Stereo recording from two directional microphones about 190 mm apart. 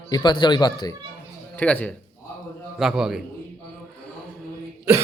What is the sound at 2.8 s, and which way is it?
Speech, 5° right (ahead or behind).